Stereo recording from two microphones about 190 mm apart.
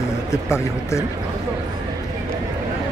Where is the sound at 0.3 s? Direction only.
15° left (ahead or behind).